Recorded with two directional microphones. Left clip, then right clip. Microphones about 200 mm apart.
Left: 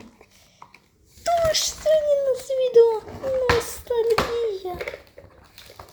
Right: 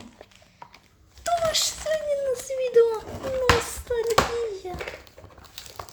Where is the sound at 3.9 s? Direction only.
5° left (ahead or behind).